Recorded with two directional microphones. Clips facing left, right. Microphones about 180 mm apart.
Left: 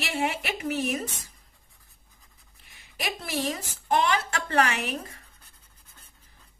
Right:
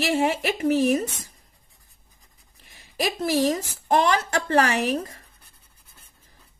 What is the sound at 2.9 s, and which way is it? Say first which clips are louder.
A woman's voice: right 8 dB; 40° right (ahead or behind).